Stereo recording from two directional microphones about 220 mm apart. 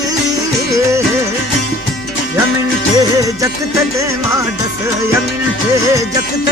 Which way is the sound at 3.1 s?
15° right (ahead or behind).